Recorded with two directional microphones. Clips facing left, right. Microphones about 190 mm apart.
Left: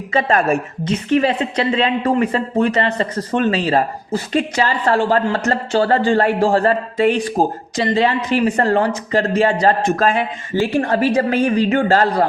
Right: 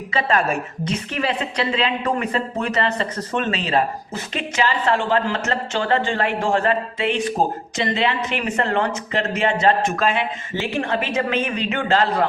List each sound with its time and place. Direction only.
0.1 s a woman's voice: 45° left (ahead or behind)
0.9 s speech: 35° left (ahead or behind)